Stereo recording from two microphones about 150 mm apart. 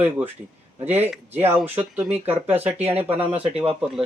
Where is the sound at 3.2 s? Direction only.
40° right (ahead or behind).